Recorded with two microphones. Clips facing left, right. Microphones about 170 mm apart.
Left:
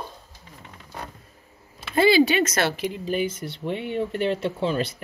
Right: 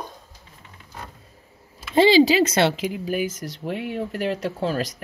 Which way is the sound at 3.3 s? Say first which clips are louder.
Even; 40° right (ahead or behind).